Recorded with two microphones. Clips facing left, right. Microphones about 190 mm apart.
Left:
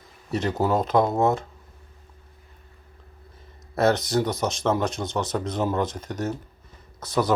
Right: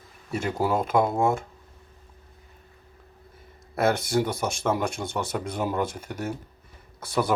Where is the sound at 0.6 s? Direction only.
10° right (ahead or behind).